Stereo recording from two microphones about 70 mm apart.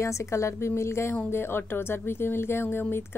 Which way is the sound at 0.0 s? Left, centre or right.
Left.